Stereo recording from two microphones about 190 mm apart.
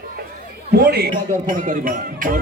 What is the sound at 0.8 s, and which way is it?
A man's voice, 55° right (ahead or behind).